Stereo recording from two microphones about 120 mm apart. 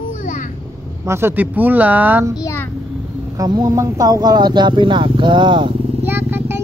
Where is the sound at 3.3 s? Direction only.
30° right (ahead or behind).